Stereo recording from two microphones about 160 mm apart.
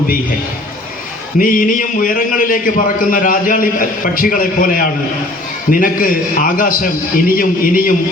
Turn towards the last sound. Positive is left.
turn(degrees=60)  # may be behind; listen again after turning